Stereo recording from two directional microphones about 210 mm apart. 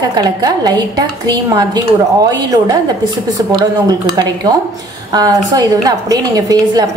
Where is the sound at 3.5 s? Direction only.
20° right (ahead or behind).